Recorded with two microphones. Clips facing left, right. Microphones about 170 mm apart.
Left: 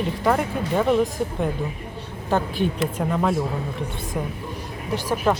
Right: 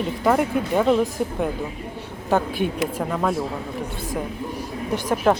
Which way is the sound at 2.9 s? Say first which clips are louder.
Left 1 dB; centre (ahead or behind).